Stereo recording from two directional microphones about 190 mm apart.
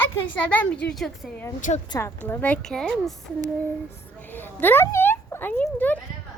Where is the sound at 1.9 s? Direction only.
15° left (ahead or behind).